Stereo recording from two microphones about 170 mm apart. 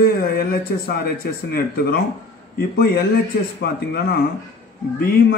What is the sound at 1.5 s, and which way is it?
A man's voice, 65° left (ahead or behind).